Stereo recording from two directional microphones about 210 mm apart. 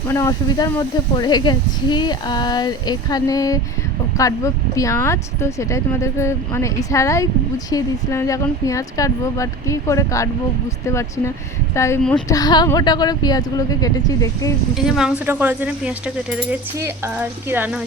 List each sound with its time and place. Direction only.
0.1 s speech: 15° left (ahead or behind)
11.7 s speech: 15° left (ahead or behind)
14.8 s speech: centre (ahead or behind)